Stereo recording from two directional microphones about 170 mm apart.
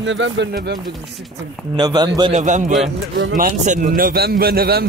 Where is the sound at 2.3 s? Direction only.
45° right (ahead or behind).